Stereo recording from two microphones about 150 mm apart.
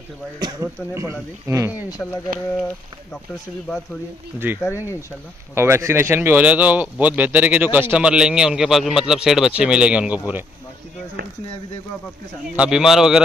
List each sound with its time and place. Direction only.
0.4 s speech: 25° right (ahead or behind)
2.0 s speech: 10° left (ahead or behind)
4.4 s speech: 10° right (ahead or behind)
12.4 s speech: 5° right (ahead or behind)